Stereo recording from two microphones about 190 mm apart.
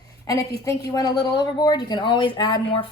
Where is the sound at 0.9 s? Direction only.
20° left (ahead or behind).